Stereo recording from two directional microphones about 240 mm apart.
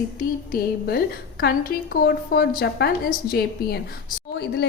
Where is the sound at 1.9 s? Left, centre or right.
Left.